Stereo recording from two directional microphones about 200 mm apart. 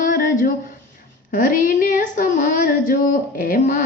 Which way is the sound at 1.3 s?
45° left (ahead or behind).